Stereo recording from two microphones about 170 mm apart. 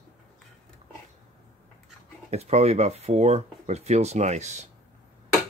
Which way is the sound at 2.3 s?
40° right (ahead or behind).